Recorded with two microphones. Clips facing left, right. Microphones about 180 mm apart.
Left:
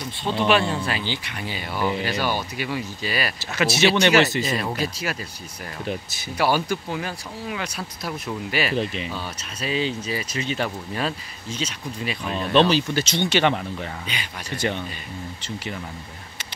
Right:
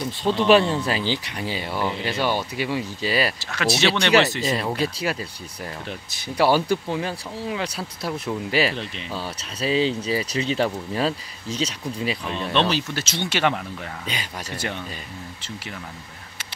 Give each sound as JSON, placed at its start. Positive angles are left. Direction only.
{"t": 0.5, "sound": "speech", "side_deg": -35}
{"t": 1.8, "sound": "speech", "side_deg": 10}
{"t": 2.0, "sound": "speech", "side_deg": -25}
{"t": 3.5, "sound": "speech", "side_deg": 5}
{"t": 4.7, "sound": "speech", "side_deg": -30}
{"t": 6.3, "sound": "speech", "side_deg": -30}
{"t": 8.7, "sound": "speech", "side_deg": 5}
{"t": 9.1, "sound": "speech", "side_deg": -30}
{"t": 12.5, "sound": "speech", "side_deg": 0}
{"t": 14.1, "sound": "speech", "side_deg": -40}